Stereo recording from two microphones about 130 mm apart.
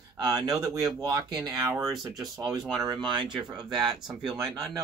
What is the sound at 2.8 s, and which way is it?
Speech, 35° right (ahead or behind).